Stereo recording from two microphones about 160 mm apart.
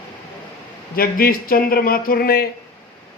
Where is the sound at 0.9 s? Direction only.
70° left (ahead or behind).